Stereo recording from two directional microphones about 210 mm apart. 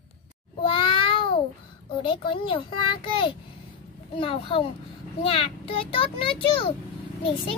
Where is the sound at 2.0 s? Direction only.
25° left (ahead or behind).